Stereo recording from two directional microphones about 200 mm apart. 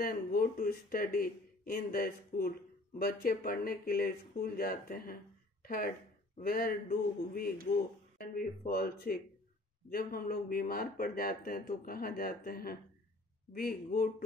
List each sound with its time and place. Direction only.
0.0 s speech: 45° left (ahead or behind)